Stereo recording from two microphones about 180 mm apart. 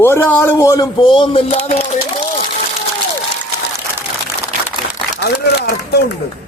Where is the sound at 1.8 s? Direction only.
40° left (ahead or behind).